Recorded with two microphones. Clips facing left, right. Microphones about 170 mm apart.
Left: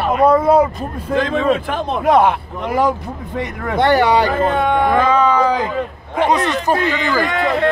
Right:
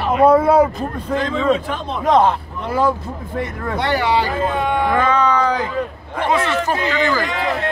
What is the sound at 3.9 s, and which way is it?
Speech, 50° left (ahead or behind).